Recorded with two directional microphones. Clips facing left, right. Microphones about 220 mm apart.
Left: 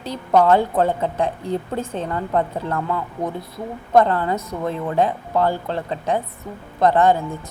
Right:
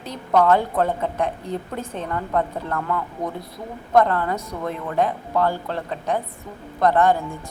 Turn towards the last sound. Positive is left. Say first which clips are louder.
# left 2 dB
turn(degrees=25)  # may be behind; listen again after turning